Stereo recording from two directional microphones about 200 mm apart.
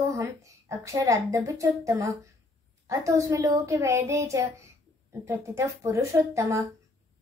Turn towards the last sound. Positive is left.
turn(degrees=-15)  # may be behind; listen again after turning